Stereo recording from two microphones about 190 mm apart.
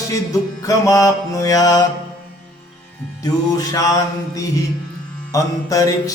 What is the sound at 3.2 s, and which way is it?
Mantra, 20° left (ahead or behind).